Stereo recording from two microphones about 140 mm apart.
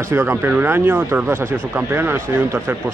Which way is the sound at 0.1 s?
20° right (ahead or behind).